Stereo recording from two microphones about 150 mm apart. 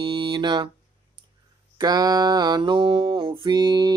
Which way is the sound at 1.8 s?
25° right (ahead or behind).